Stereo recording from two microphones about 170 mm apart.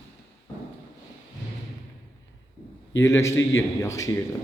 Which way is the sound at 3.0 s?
15° left (ahead or behind).